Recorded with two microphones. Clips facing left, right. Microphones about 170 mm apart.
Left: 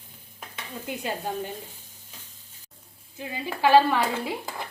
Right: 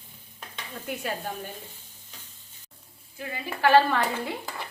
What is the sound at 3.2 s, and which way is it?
A woman's voice, 15° left (ahead or behind).